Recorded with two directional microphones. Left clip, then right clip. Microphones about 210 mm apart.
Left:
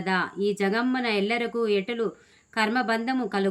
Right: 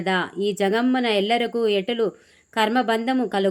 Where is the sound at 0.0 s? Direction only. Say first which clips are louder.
Right 3 dB; 15° right (ahead or behind).